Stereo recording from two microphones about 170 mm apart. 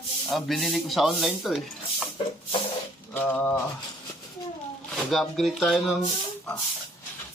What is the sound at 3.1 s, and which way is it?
Rub, 10° left (ahead or behind).